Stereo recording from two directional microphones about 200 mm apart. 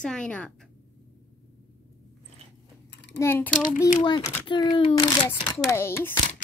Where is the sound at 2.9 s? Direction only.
60° left (ahead or behind).